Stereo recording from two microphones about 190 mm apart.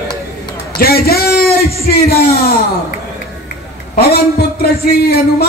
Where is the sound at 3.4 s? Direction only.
50° left (ahead or behind).